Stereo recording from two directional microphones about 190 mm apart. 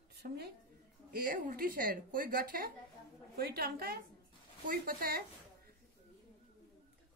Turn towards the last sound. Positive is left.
turn(degrees=-50)  # may be behind; listen again after turning